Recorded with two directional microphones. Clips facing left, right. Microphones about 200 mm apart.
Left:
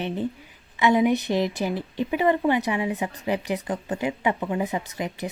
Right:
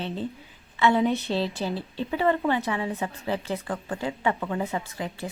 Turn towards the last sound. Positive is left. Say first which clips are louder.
# left 2 dB
turn(degrees=20)  # may be behind; listen again after turning